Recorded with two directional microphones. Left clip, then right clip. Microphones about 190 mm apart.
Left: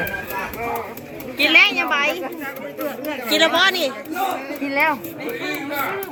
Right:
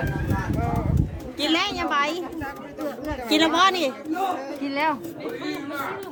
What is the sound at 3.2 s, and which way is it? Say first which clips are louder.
Speech: left 3 dB; 45° right (ahead or behind).